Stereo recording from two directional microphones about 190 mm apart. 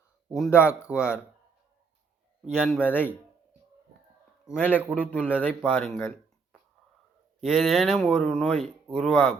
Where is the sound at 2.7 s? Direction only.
10° left (ahead or behind).